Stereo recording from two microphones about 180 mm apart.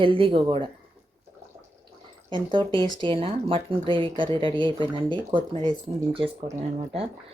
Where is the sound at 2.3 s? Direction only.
25° right (ahead or behind).